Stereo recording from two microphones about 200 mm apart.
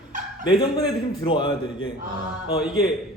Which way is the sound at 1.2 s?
25° left (ahead or behind).